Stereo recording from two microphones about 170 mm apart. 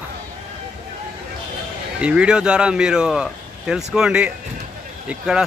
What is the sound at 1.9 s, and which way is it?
Speech, 5° right (ahead or behind).